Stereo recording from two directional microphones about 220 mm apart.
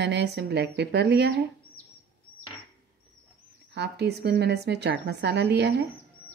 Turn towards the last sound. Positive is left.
turn(degrees=-50)  # may be behind; listen again after turning